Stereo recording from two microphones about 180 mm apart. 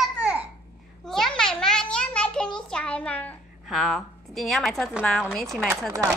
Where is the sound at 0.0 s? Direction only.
5° right (ahead or behind).